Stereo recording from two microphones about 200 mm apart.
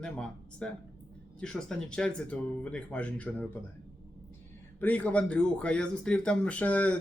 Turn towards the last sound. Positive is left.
turn(degrees=5)  # may be behind; listen again after turning